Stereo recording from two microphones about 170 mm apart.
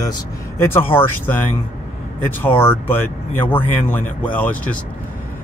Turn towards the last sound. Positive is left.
turn(degrees=10)  # may be behind; listen again after turning